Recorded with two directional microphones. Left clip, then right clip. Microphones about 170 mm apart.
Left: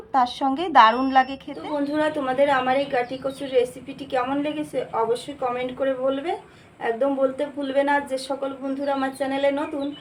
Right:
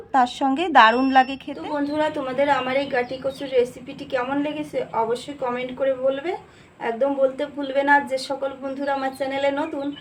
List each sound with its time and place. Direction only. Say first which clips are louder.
0.1 s a woman's voice: right 2 dB; 20° right (ahead or behind)
1.7 s a woman's voice: even; 5° right (ahead or behind)